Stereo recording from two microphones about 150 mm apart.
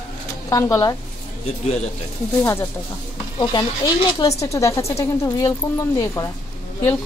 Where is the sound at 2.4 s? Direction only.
20° left (ahead or behind).